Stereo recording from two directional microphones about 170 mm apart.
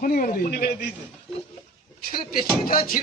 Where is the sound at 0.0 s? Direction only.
55° left (ahead or behind).